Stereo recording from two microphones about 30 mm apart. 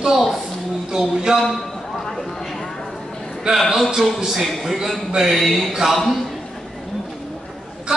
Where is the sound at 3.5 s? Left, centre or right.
Right.